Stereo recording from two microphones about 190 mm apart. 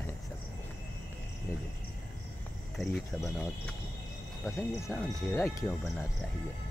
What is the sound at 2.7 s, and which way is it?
Speech, centre (ahead or behind).